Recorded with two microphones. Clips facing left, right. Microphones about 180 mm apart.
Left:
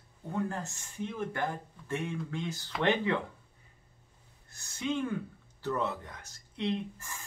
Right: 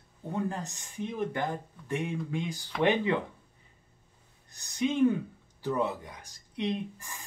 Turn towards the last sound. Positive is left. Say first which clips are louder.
# right 1 dB
turn(degrees=-15)  # may be behind; listen again after turning